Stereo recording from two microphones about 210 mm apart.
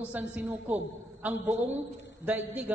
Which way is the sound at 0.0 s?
5° right (ahead or behind).